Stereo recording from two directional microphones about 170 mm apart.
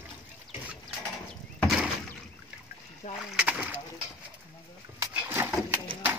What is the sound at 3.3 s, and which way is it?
Rowboat, 5° right (ahead or behind).